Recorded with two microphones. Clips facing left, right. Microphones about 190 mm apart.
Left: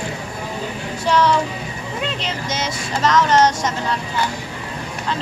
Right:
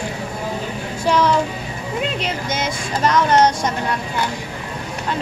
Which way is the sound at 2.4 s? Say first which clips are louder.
Left 1 dB; 55° right (ahead or behind).